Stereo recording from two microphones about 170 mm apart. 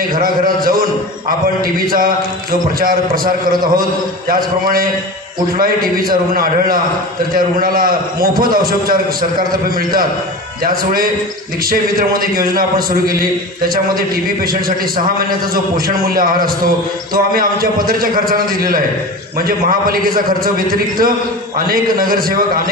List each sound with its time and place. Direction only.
0.1 s a man's voice: 60° right (ahead or behind)
4.3 s a man's voice: 60° right (ahead or behind)